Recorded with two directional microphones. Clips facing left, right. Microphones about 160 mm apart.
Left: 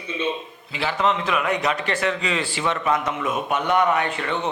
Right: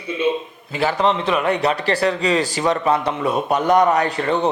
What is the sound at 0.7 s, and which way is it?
A man's voice, 45° right (ahead or behind).